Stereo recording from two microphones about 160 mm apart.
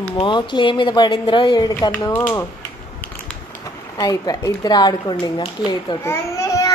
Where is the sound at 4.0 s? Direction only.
25° left (ahead or behind).